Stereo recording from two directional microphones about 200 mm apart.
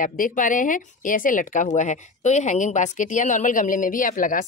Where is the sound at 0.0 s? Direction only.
40° left (ahead or behind).